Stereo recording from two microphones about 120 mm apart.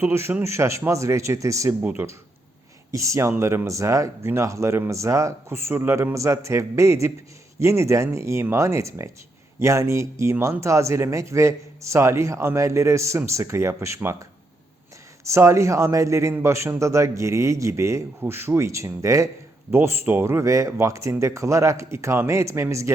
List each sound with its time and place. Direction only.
0.0 s speech: 20° right (ahead or behind)
1.8 s speech: 10° right (ahead or behind)
2.9 s speech: 25° right (ahead or behind)